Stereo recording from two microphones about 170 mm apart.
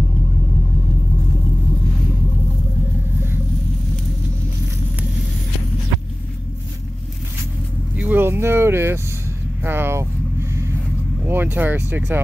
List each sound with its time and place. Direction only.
7.9 s speech: 10° right (ahead or behind)
11.2 s speech: 10° right (ahead or behind)